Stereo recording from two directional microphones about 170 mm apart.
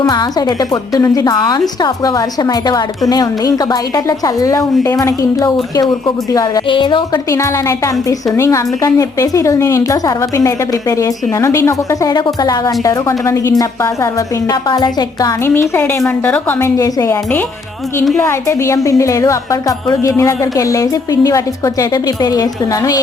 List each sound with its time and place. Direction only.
0.0 s a woman's voice: 25° left (ahead or behind)